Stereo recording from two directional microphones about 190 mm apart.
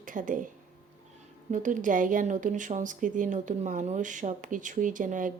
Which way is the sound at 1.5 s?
40° right (ahead or behind).